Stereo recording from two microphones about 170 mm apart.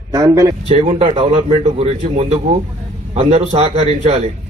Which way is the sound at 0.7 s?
35° right (ahead or behind).